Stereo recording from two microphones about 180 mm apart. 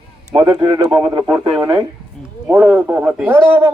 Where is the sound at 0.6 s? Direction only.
25° right (ahead or behind).